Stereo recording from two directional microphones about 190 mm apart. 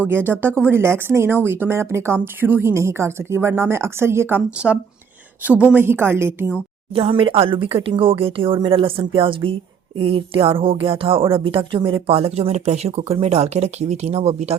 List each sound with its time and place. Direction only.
0.1 s speech: 10° right (ahead or behind)
6.9 s speech: 30° right (ahead or behind)